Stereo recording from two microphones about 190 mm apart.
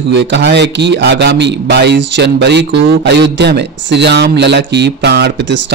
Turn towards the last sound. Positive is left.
turn(degrees=-65)  # may be behind; listen again after turning